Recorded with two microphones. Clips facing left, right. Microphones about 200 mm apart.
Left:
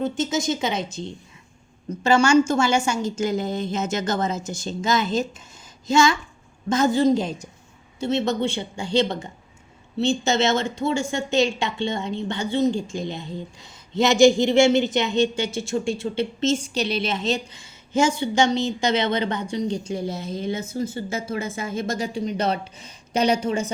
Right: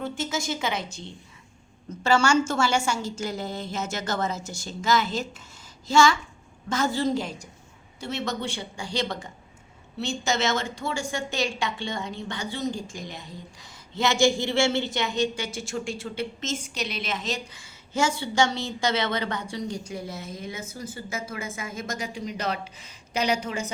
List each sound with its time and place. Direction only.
0.0 s a woman's voice: 20° left (ahead or behind)
2.0 s a woman's voice: 20° left (ahead or behind)